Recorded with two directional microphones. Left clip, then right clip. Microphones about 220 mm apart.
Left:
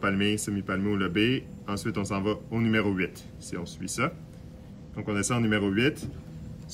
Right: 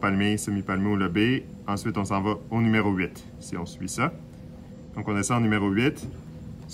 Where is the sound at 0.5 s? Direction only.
30° right (ahead or behind).